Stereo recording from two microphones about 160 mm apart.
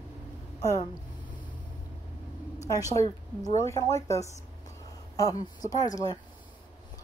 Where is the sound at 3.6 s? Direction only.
20° left (ahead or behind).